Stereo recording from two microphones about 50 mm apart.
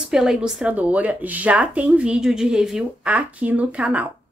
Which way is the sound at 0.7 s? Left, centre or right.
Right.